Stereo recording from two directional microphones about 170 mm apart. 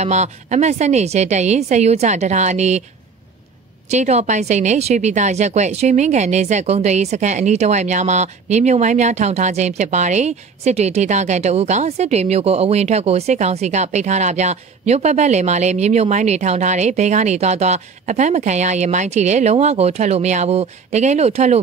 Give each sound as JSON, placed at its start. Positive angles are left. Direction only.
{"t": 0.0, "sound": "speech", "side_deg": -45}
{"t": 3.9, "sound": "speech", "side_deg": -40}